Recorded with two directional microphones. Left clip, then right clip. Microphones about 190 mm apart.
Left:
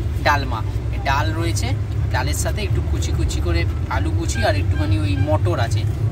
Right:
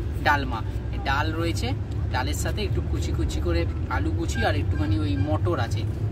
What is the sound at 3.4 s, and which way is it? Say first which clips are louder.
Speech: left 3 dB; centre (ahead or behind).